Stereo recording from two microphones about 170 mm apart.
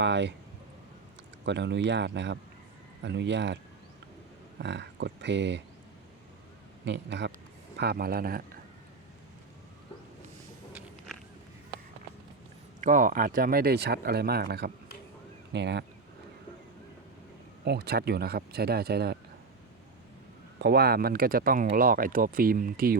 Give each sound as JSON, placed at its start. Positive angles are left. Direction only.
{"t": 0.0, "sound": "speech", "side_deg": -90}
{"t": 1.5, "sound": "speech", "side_deg": -90}
{"t": 4.6, "sound": "speech", "side_deg": -90}
{"t": 6.8, "sound": "speech", "side_deg": -90}
{"t": 7.8, "sound": "speech", "side_deg": -65}
{"t": 10.7, "sound": "a sound", "side_deg": -10}
{"t": 12.8, "sound": "speech", "side_deg": -50}
{"t": 15.5, "sound": "speech", "side_deg": -90}
{"t": 17.7, "sound": "speech", "side_deg": -70}
{"t": 20.6, "sound": "speech", "side_deg": -70}